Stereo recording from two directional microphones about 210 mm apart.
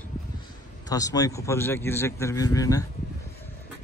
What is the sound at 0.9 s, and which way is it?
Speech, 15° left (ahead or behind).